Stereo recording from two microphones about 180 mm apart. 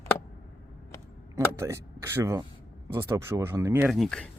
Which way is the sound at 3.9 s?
Centre (ahead or behind).